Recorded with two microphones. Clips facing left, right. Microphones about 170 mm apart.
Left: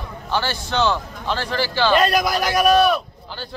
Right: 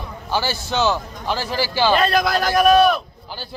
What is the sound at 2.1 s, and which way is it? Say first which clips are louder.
Speech: right 1 dB; 15° left (ahead or behind).